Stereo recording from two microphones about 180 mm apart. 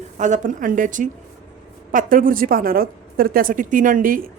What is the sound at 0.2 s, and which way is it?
A woman's voice, 45° right (ahead or behind).